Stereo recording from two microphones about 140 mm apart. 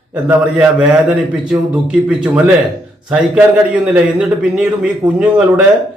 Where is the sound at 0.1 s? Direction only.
10° right (ahead or behind).